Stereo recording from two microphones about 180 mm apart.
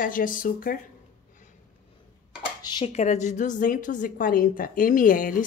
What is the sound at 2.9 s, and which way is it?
Speech, 40° left (ahead or behind).